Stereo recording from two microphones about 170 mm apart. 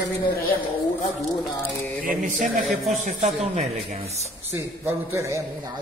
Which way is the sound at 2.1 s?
50° right (ahead or behind).